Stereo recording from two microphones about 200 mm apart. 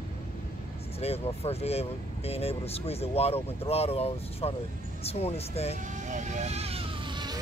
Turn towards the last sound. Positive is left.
turn(degrees=-25)  # may be behind; listen again after turning